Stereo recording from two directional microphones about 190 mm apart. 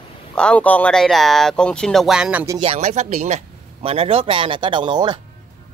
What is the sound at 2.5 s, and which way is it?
Speech, 30° right (ahead or behind).